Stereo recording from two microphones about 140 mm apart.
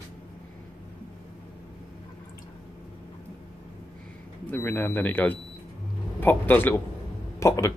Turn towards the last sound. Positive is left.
turn(degrees=20)  # may be behind; listen again after turning